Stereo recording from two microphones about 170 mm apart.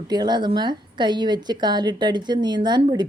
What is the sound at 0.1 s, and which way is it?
Speech, 25° right (ahead or behind).